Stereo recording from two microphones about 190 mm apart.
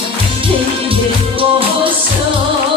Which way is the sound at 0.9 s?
30° right (ahead or behind).